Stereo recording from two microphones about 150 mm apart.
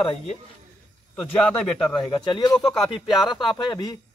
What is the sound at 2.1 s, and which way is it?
Speech, 30° left (ahead or behind).